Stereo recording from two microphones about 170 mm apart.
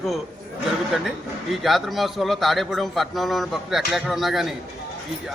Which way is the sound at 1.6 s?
Centre (ahead or behind).